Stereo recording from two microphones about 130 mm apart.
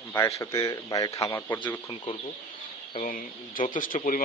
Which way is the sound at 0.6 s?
30° left (ahead or behind).